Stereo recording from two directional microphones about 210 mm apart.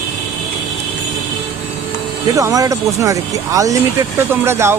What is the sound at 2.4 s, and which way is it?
Speech, 15° right (ahead or behind).